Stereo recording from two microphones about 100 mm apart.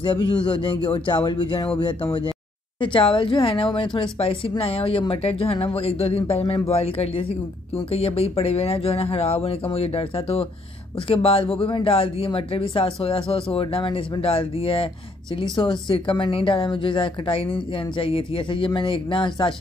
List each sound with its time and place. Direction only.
0.0 s a woman's voice: 50° left (ahead or behind); by 10.5 s 80° left
11.0 s a woman's voice: 65° left (ahead or behind)